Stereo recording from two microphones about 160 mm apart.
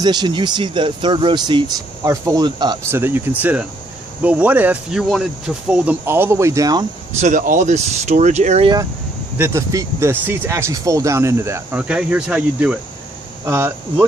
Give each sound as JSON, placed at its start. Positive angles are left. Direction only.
{"t": 0.0, "sound": "speech", "side_deg": -25}
{"t": 2.9, "sound": "speech", "side_deg": -15}
{"t": 7.2, "sound": "speech", "side_deg": -50}
{"t": 9.4, "sound": "speech", "side_deg": -15}